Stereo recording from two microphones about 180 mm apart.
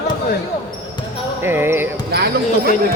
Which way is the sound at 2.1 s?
60° right (ahead or behind).